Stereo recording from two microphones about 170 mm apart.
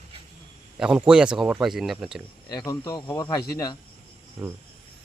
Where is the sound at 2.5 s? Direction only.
20° left (ahead or behind).